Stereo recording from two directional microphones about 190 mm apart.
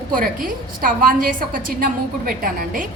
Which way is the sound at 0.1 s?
45° right (ahead or behind).